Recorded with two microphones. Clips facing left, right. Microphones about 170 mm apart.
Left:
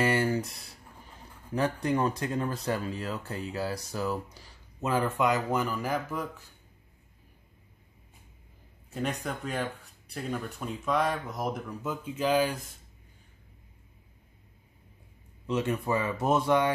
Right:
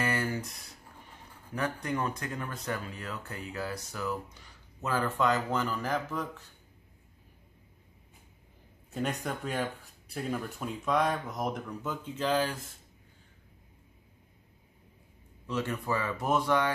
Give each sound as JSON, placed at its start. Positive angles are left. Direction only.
{"t": 0.0, "sound": "a sound", "side_deg": 25}
{"t": 1.5, "sound": "speech", "side_deg": 30}
{"t": 4.8, "sound": "speech", "side_deg": 20}
{"t": 8.9, "sound": "speech", "side_deg": 0}
{"t": 15.4, "sound": "speech", "side_deg": 20}